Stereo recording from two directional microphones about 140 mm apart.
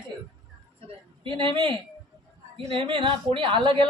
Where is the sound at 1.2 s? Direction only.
35° right (ahead or behind).